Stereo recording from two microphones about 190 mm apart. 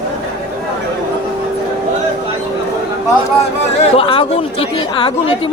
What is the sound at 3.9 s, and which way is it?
Speech, 30° left (ahead or behind).